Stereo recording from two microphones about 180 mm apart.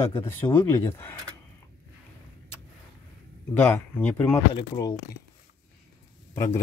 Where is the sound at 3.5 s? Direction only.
10° left (ahead or behind).